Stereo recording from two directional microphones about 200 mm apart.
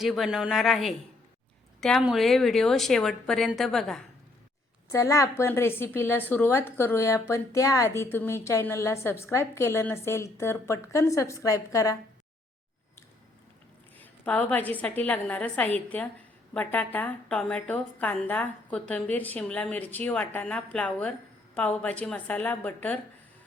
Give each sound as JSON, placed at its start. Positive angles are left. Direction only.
{"t": 0.0, "sound": "a woman's voice", "side_deg": 0}
{"t": 4.9, "sound": "a woman's voice", "side_deg": 15}
{"t": 14.0, "sound": "a woman's voice", "side_deg": 5}